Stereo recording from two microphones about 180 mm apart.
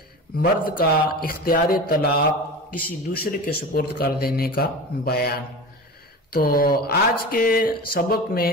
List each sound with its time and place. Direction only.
0.4 s speech: 55° left (ahead or behind)